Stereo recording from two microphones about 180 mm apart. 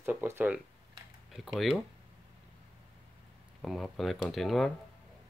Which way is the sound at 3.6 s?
Centre (ahead or behind).